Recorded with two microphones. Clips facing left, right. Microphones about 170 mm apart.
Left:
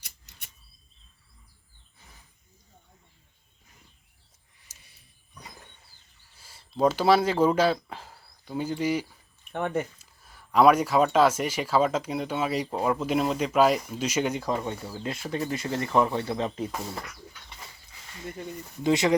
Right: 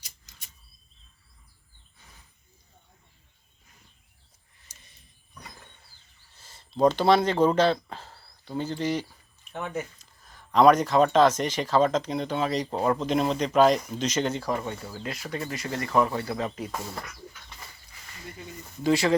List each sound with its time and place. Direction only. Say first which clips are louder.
0.0 s a sound: left 1 dB; 60° left (ahead or behind)
4.6 s dog: right 2 dB; 10° left (ahead or behind)
6.3 s speech: right 1 dB; 10° left (ahead or behind)
9.5 s speech: left 4 dB; 60° left (ahead or behind)
10.0 s speech: right 1 dB; 10° left (ahead or behind)
15.0 s speech: left 3 dB; 25° left (ahead or behind)
18.8 s speech: even; 20° left (ahead or behind)